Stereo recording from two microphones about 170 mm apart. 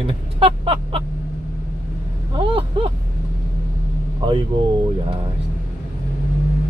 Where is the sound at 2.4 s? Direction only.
30° right (ahead or behind).